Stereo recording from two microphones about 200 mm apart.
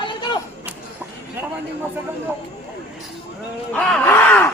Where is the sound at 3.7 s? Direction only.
5° left (ahead or behind).